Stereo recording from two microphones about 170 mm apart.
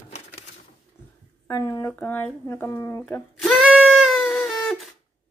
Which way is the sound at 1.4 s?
15° left (ahead or behind).